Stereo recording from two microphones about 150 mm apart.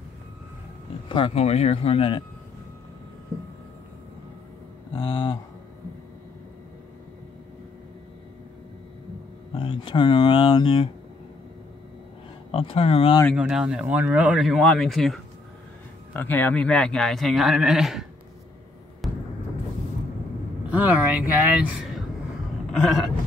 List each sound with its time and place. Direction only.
1.0 s speech: 35° left (ahead or behind)
4.9 s speech: 30° left (ahead or behind)
9.5 s speech: 35° left (ahead or behind)
12.4 s speech: 40° left (ahead or behind)
13.3 s a man's voice: 5° right (ahead or behind)
16.1 s a man's voice: 10° left (ahead or behind)
19.0 s vehicle: centre (ahead or behind)
20.7 s speech: 10° right (ahead or behind)
22.7 s a sound: 5° left (ahead or behind)